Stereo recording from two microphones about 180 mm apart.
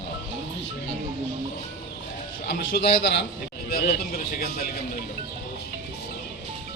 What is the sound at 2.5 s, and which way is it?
Speech, 70° left (ahead or behind).